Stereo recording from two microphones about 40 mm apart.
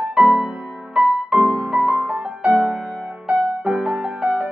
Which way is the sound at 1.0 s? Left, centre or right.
Centre.